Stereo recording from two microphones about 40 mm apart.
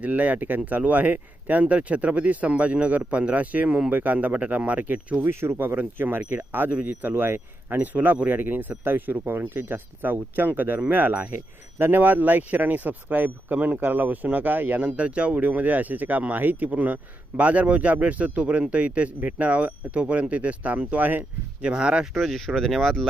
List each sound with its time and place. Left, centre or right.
0.0 s speech: right
5.2 s speech: right
6.0 s speech: right
6.7 s speech: right
7.0 s speech: right
7.7 s speech: right
9.4 s speech: right
14.8 s speech: right
15.4 s speech: right
21.6 s speech: right
22.1 s speech: centre